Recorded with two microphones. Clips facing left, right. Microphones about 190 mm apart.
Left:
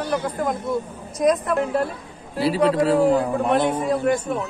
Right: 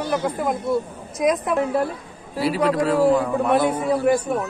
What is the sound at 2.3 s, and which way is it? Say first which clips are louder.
Speech: left 1 dB; 30° left (ahead or behind).